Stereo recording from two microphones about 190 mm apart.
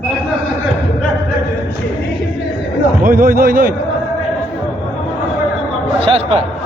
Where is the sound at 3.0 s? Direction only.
45° right (ahead or behind).